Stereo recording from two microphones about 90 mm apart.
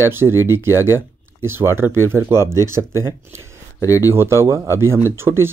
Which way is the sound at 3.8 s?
40° left (ahead or behind).